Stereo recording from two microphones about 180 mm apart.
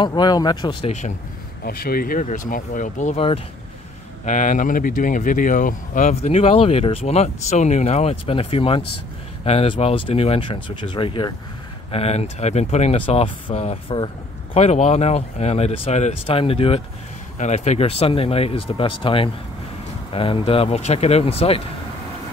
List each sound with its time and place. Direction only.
0.0 s speech: 25° left (ahead or behind)
1.6 s speech: 55° left (ahead or behind); by 21.6 s 35° left (ahead or behind)